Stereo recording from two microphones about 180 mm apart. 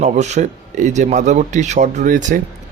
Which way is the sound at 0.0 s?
40° right (ahead or behind).